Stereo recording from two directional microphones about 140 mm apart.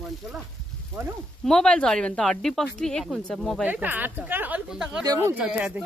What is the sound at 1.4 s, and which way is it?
Speech, 5° left (ahead or behind).